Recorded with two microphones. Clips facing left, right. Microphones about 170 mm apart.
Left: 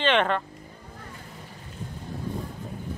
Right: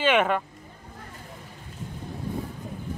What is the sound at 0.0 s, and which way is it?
Speech, 10° right (ahead or behind).